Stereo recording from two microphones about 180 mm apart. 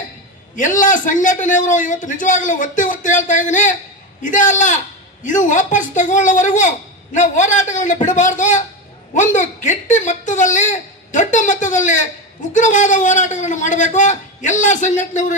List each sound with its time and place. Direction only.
0.5 s a woman's voice: 45° left (ahead or behind)